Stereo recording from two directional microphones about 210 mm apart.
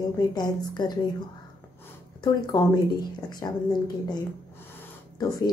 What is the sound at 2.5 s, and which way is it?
A woman's voice, 20° left (ahead or behind).